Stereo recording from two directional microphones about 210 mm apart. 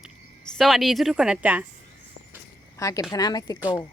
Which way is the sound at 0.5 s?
Centre (ahead or behind).